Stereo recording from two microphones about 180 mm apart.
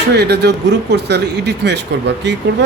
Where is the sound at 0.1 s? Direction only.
65° right (ahead or behind).